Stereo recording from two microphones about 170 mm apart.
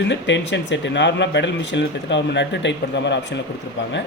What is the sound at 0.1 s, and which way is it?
Speech, 90° left.